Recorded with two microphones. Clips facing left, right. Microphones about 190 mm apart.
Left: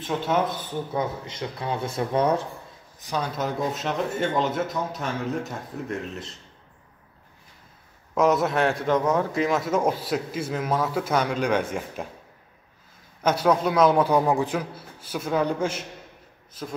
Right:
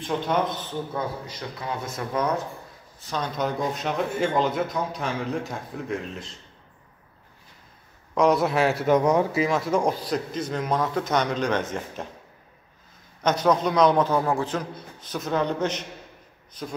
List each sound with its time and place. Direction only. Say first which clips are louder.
0.0 s a man's voice: even; 5° left (ahead or behind)
0.9 s speech: left 2 dB; 25° left (ahead or behind)
3.0 s a man's voice: even; 10° left (ahead or behind)
8.1 s a man's voice: right 1 dB; 5° left (ahead or behind); by 9.4 s 15° right (ahead or behind)
9.4 s a man's voice: even; centre (ahead or behind)
13.2 s a man's voice: even; 5° left (ahead or behind)